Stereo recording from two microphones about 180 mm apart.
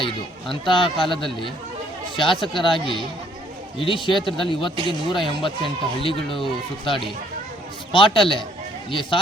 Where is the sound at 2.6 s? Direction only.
25° left (ahead or behind).